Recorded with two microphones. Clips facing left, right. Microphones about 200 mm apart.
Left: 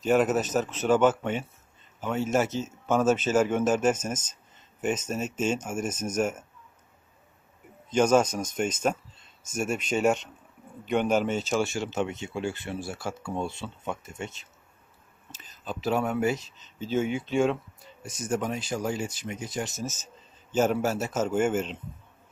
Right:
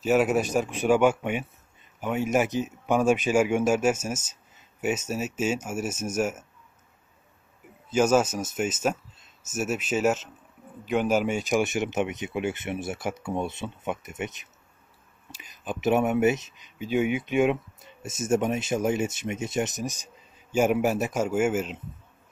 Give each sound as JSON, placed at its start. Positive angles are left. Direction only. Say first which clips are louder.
{"t": 0.0, "sound": "speech", "louder": "right 1 dB", "side_deg": -5}
{"t": 7.9, "sound": "speech", "louder": "even", "side_deg": -5}